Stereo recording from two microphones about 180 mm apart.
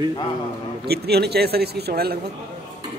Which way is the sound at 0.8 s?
65° right (ahead or behind).